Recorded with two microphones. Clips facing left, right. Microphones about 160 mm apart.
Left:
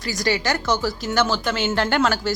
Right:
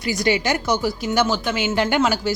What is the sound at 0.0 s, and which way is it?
Speech, 40° left (ahead or behind).